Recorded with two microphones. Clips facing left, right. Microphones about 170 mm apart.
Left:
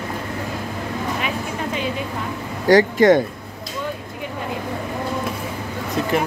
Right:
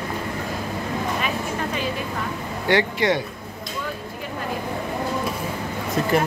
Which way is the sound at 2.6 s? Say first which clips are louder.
Left 7 dB; 45° left (ahead or behind).